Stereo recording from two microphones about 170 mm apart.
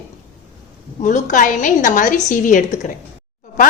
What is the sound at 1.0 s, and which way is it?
A woman's voice, 50° left (ahead or behind).